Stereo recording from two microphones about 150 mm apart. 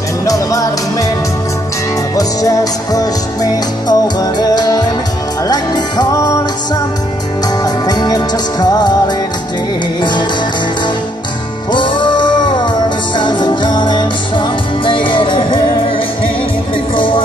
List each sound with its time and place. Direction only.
0.2 s music: 20° left (ahead or behind)
2.1 s music: 25° left (ahead or behind)
11.7 s music: 30° left (ahead or behind)
16.9 s music: 35° left (ahead or behind)